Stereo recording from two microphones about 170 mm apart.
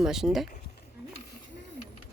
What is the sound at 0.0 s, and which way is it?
Speech, 5° right (ahead or behind).